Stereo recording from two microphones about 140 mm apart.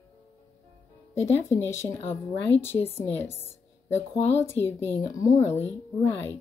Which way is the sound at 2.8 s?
50° left (ahead or behind).